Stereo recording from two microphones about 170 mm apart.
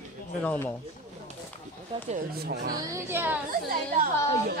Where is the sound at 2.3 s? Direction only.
65° right (ahead or behind).